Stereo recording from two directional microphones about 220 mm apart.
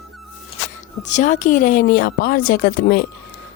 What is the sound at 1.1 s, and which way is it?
A woman's voice, 35° left (ahead or behind).